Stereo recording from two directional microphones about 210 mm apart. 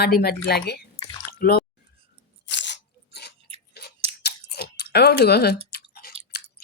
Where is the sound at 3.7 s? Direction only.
50° left (ahead or behind).